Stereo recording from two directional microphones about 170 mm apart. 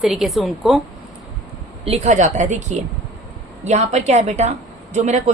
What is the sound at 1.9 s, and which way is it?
A woman's voice, 40° right (ahead or behind).